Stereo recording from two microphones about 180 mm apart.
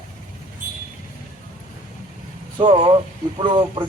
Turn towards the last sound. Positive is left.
turn(degrees=-25)  # may be behind; listen again after turning